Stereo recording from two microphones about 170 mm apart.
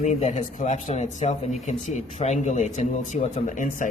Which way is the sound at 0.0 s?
45° left (ahead or behind).